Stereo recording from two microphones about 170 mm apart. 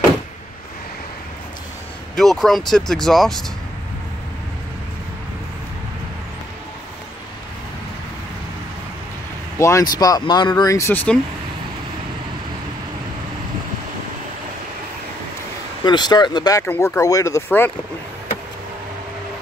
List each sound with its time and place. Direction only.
2.1 s speech: centre (ahead or behind)
9.6 s speech: 20° left (ahead or behind)
15.8 s speech: 25° left (ahead or behind)